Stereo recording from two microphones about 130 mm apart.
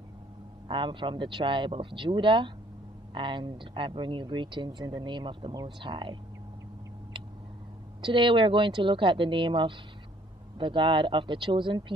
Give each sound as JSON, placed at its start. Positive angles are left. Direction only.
{"t": 0.7, "sound": "speech", "side_deg": -40}
{"t": 8.0, "sound": "speech", "side_deg": -40}